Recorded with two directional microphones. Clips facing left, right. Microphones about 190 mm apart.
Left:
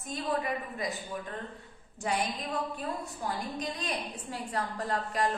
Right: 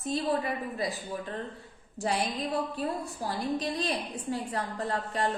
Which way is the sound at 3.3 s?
35° right (ahead or behind).